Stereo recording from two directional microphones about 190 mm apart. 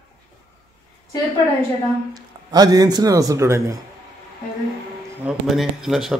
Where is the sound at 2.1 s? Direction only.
20° right (ahead or behind).